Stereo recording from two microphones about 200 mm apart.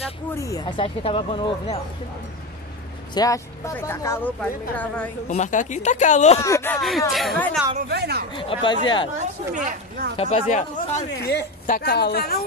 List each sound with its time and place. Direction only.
0.4 s speech: 15° left (ahead or behind)
3.2 s a woman's voice: 15° left (ahead or behind)
5.3 s speech: 40° left (ahead or behind)
6.4 s speech: 15° left (ahead or behind)
7.1 s speech: centre (ahead or behind)
7.9 s speech: 55° right (ahead or behind)
8.4 s speech: 25° left (ahead or behind)
9.2 s speech: 40° right (ahead or behind)
10.1 s speech: 30° left (ahead or behind)
11.1 s a woman's voice: 60° left (ahead or behind)